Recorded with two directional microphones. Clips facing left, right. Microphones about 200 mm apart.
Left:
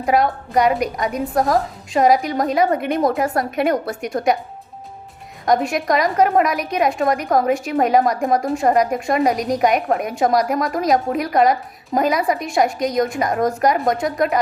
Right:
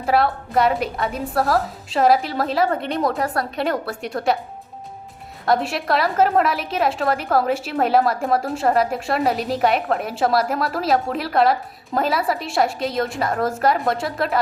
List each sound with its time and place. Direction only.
0.0 s a woman's voice: 15° left (ahead or behind)
5.6 s a woman's voice: 15° left (ahead or behind)